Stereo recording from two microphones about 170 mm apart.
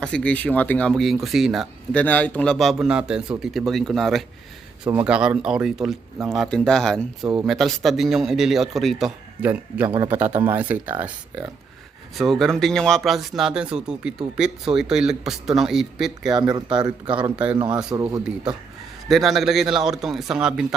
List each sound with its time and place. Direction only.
0.0 s speech: 5° left (ahead or behind)
12.1 s speech: centre (ahead or behind)
16.2 s speech: 25° right (ahead or behind)
17.3 s speech: 5° right (ahead or behind)
17.9 s speech: 20° right (ahead or behind)
19.0 s speech: centre (ahead or behind)